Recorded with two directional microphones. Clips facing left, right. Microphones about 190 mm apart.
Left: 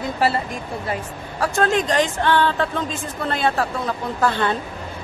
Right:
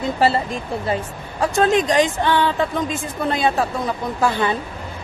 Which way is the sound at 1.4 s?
20° right (ahead or behind).